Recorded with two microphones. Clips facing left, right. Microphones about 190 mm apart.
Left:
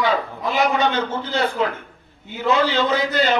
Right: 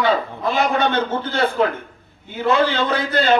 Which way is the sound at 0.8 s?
55° right (ahead or behind).